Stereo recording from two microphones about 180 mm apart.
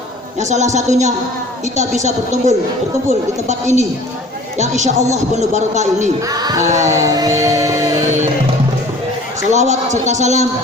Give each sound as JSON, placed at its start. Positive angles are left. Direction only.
{"t": 0.3, "sound": "a man's voice", "side_deg": -40}
{"t": 6.2, "sound": "speech", "side_deg": -20}
{"t": 6.8, "sound": "a sound", "side_deg": -15}
{"t": 9.5, "sound": "a man's voice", "side_deg": -40}